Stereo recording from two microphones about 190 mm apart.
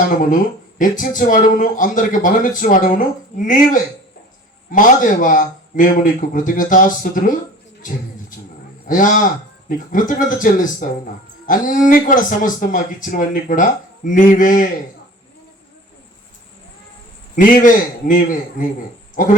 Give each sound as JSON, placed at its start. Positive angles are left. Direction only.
{"t": 0.2, "sound": "speech", "side_deg": 45}
{"t": 8.9, "sound": "speech", "side_deg": 45}
{"t": 17.3, "sound": "speech", "side_deg": 45}